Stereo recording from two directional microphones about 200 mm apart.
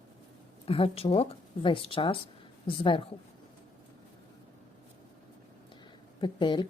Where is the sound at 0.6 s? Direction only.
30° left (ahead or behind).